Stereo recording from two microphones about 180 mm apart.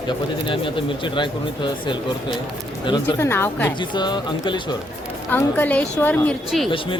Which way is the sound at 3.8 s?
25° left (ahead or behind).